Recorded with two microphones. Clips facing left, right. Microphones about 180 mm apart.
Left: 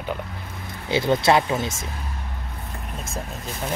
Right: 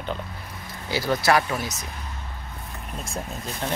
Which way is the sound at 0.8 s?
25° left (ahead or behind).